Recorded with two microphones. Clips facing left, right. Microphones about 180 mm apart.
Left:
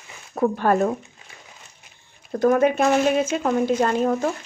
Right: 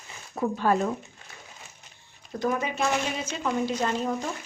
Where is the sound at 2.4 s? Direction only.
55° left (ahead or behind).